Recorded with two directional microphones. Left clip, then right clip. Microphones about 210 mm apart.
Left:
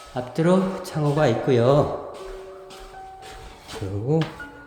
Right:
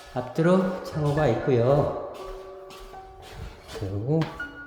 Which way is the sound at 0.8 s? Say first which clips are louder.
Left 3 dB; 20° left (ahead or behind).